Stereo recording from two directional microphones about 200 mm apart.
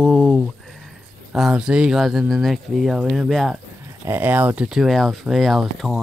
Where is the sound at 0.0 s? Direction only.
5° left (ahead or behind).